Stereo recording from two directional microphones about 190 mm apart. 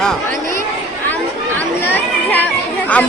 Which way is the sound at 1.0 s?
10° left (ahead or behind).